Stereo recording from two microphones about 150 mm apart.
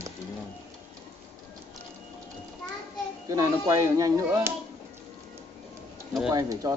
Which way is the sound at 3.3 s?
20° right (ahead or behind).